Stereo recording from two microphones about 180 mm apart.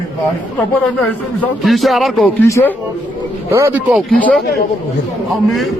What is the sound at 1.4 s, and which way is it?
Speech, centre (ahead or behind).